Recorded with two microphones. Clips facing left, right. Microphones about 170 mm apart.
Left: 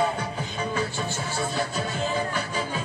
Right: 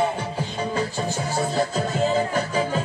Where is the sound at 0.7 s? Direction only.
40° right (ahead or behind).